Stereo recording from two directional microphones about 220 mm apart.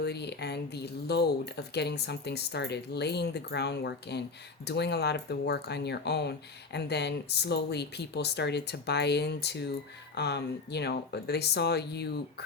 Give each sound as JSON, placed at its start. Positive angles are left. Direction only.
{"t": 0.0, "sound": "speech", "side_deg": 50}